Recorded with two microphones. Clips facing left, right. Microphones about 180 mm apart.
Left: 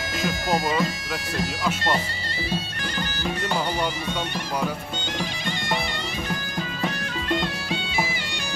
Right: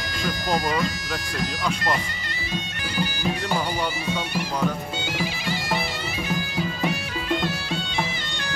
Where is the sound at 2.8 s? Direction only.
10° right (ahead or behind).